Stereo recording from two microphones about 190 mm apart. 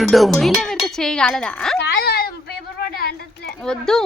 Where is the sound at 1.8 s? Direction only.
60° left (ahead or behind).